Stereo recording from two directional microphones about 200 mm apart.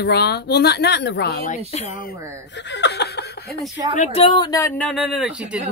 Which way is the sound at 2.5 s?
60° left (ahead or behind).